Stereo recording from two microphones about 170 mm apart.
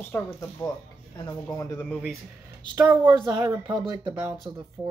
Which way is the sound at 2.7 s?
25° right (ahead or behind).